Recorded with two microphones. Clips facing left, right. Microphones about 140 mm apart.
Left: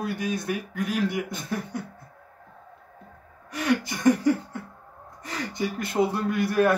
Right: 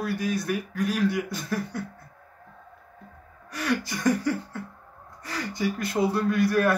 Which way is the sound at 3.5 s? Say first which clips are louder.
Left 3 dB; 20° left (ahead or behind).